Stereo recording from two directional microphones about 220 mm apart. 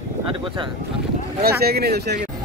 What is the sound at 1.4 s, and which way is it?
Speech, 45° right (ahead or behind).